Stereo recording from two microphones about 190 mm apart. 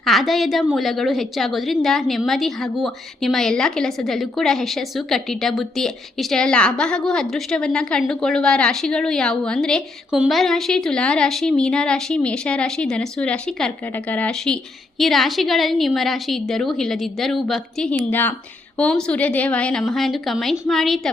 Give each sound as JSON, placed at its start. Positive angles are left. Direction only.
{"t": 0.0, "sound": "a woman's voice", "side_deg": 0}